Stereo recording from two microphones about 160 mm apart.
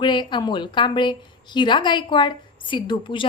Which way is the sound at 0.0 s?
30° left (ahead or behind).